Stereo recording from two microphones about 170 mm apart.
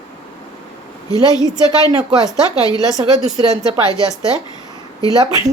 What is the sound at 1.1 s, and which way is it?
Speech, 20° left (ahead or behind).